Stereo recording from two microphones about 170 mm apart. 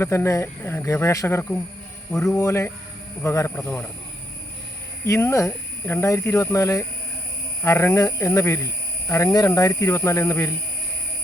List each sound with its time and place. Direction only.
0.0 s speech: 15° left (ahead or behind)
5.0 s speech: 15° left (ahead or behind)